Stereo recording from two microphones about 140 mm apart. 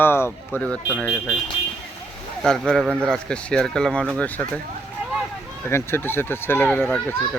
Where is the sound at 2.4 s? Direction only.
5° left (ahead or behind).